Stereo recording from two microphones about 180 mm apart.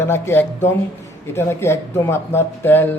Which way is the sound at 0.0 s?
10° left (ahead or behind).